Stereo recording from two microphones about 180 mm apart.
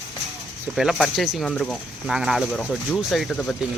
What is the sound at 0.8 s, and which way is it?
Speech, centre (ahead or behind).